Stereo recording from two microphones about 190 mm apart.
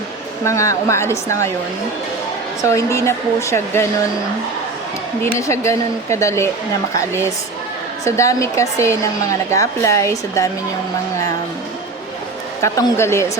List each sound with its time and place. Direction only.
0.4 s a woman's voice: 15° left (ahead or behind)
2.6 s a woman's voice: 15° left (ahead or behind)
5.2 s a woman's voice: 15° left (ahead or behind)
12.6 s a woman's voice: 15° left (ahead or behind)